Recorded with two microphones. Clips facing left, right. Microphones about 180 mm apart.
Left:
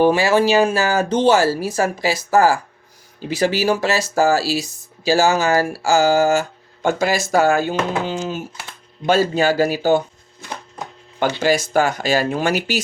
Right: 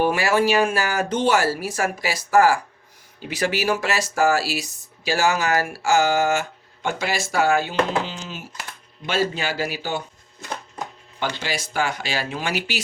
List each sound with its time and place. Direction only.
0.0 s speech: 30° left (ahead or behind); by 10.0 s 45° left (ahead or behind)
11.2 s speech: 45° left (ahead or behind)